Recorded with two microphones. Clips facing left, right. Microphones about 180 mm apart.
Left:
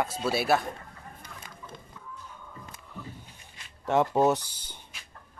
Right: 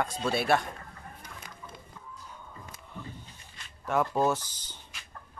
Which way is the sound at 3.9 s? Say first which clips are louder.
Left 4 dB; 25° left (ahead or behind).